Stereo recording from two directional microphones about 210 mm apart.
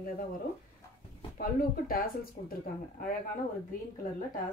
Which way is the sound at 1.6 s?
45° left (ahead or behind).